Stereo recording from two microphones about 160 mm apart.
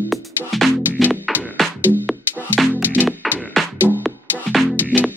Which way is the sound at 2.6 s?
Centre (ahead or behind).